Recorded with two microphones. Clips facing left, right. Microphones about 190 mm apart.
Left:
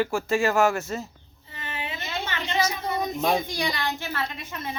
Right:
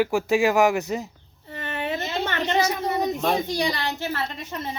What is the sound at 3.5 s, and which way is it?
A woman's voice, 40° right (ahead or behind).